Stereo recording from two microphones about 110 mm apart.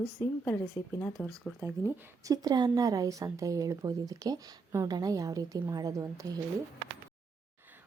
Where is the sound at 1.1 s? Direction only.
5° left (ahead or behind).